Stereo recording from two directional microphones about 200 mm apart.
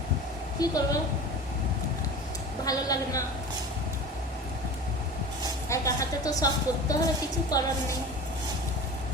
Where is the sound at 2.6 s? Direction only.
15° left (ahead or behind).